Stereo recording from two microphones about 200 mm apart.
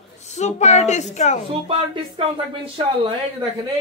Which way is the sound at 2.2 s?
25° right (ahead or behind).